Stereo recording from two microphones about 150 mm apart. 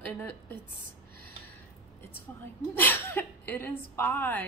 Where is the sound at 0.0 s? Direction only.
10° left (ahead or behind).